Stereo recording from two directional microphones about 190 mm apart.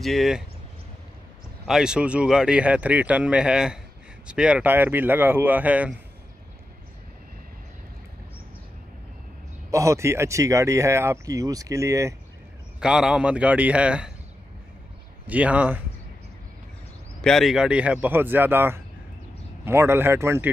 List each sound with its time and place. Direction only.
0.0 s speech: centre (ahead or behind)
1.7 s speech: 5° right (ahead or behind)
9.7 s speech: 15° right (ahead or behind)
12.8 s speech: 5° right (ahead or behind)
15.2 s speech: 5° right (ahead or behind)
17.2 s speech: centre (ahead or behind)